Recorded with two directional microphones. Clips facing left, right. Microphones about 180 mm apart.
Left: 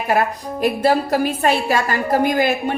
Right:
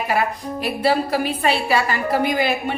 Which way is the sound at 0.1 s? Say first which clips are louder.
Left 5 dB; 45° left (ahead or behind).